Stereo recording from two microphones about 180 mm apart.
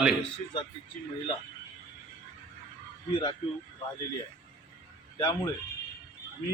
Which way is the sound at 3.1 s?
30° left (ahead or behind).